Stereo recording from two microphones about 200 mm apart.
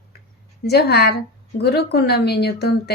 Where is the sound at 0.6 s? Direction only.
55° left (ahead or behind).